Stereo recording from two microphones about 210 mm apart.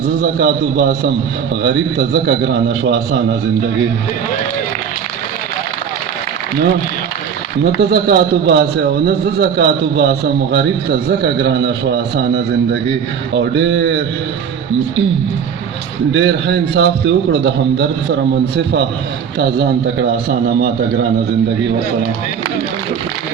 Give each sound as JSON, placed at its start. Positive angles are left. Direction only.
{"t": 0.2, "sound": "a man's voice", "side_deg": -50}
{"t": 7.6, "sound": "a man's voice", "side_deg": -50}
{"t": 16.1, "sound": "a man's voice", "side_deg": -55}